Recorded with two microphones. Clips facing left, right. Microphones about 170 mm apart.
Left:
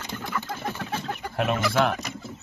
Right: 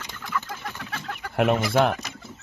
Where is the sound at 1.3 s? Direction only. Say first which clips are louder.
Right 3 dB; 60° right (ahead or behind).